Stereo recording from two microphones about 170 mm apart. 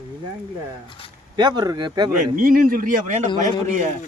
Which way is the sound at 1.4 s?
25° right (ahead or behind).